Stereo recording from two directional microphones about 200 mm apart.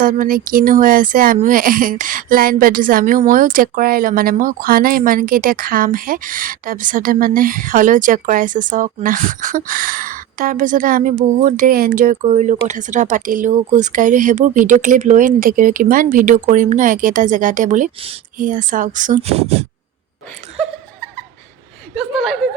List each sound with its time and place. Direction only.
0.0 s speech: 45° right (ahead or behind)
21.9 s speech: centre (ahead or behind)